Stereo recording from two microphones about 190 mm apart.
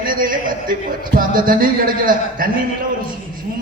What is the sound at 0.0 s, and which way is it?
A man's voice, 45° right (ahead or behind).